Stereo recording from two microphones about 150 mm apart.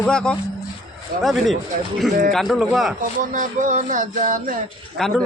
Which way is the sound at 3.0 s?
60° right (ahead or behind).